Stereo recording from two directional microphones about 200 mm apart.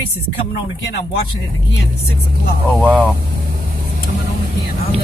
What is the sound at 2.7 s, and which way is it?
Speech, 5° right (ahead or behind).